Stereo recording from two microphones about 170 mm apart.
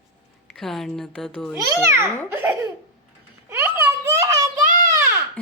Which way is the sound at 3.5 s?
15° right (ahead or behind).